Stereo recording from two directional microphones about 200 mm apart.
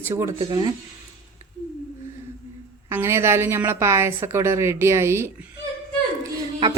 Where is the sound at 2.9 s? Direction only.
15° right (ahead or behind).